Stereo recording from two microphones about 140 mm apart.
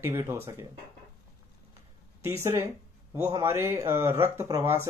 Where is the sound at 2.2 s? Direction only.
20° right (ahead or behind).